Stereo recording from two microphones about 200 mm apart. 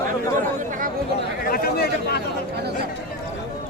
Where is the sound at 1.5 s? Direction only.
50° left (ahead or behind).